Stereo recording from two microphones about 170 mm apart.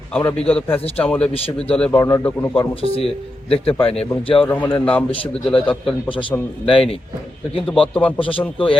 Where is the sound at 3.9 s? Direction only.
35° left (ahead or behind).